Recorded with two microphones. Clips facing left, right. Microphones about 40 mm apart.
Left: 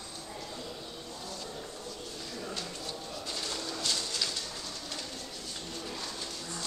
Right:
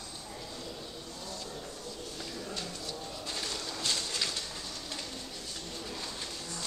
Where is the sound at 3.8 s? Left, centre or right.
Centre.